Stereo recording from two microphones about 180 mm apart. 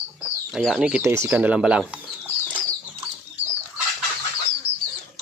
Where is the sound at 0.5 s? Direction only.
Centre (ahead or behind).